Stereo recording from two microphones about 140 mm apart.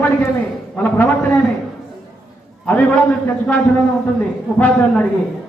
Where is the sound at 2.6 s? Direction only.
10° left (ahead or behind).